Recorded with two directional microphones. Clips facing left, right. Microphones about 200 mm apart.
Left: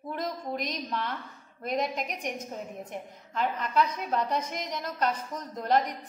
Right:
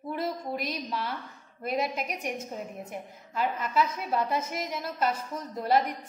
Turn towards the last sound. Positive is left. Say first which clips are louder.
# right 1 dB
turn(degrees=-5)  # may be behind; listen again after turning